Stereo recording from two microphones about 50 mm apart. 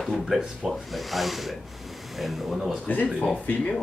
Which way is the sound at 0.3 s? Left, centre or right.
Centre.